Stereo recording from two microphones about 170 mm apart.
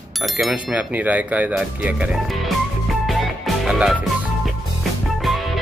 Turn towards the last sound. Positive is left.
turn(degrees=0)  # may be behind; listen again after turning